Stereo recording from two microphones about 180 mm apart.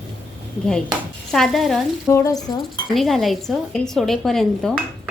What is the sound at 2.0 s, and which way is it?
Speech, 15° left (ahead or behind).